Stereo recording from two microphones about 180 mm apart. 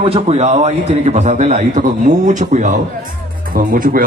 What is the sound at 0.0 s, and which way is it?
A man's voice, 35° right (ahead or behind).